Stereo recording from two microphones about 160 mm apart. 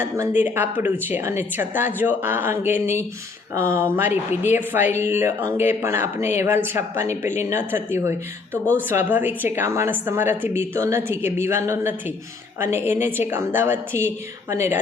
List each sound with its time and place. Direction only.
0.2 s a woman's voice: 15° right (ahead or behind)